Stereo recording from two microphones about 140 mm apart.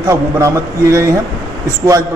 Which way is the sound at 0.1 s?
20° right (ahead or behind).